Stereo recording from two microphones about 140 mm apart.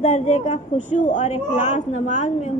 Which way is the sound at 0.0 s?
55° left (ahead or behind).